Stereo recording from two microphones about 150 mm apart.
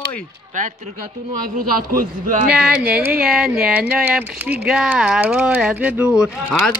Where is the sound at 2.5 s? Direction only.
5° right (ahead or behind).